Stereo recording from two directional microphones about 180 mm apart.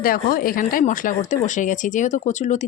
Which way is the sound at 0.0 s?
55° left (ahead or behind).